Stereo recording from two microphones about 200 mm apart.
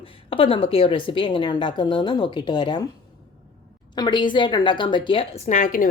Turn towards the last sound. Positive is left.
turn(degrees=40)  # may be behind; listen again after turning